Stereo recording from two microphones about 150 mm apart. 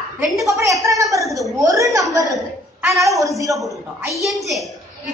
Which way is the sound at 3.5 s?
20° right (ahead or behind).